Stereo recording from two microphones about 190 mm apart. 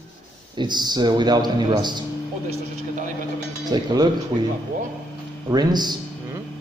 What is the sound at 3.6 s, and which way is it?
Speech, 20° right (ahead or behind).